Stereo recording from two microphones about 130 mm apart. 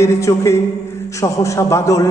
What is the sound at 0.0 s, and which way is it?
A man's voice, 25° left (ahead or behind).